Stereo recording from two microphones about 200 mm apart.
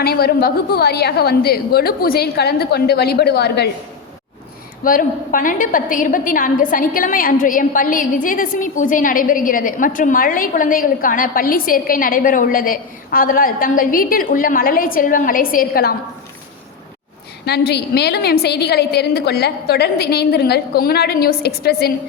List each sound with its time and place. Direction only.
0.0 s a woman's voice: 50° left (ahead or behind)
4.8 s a woman's voice: 45° left (ahead or behind)
17.4 s a woman's voice: 55° left (ahead or behind)